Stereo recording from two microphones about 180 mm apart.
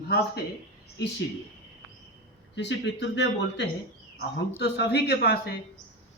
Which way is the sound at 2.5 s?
75° left (ahead or behind).